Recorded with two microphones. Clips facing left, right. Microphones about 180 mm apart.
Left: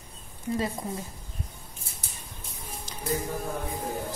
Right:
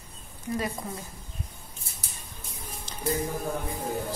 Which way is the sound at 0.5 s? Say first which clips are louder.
Left 1 dB; 25° left (ahead or behind).